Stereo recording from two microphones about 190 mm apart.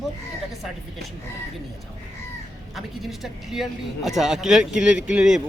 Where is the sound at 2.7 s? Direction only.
Centre (ahead or behind).